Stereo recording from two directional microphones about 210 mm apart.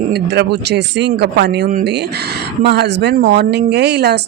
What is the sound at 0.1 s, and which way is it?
A woman's voice, 55° right (ahead or behind).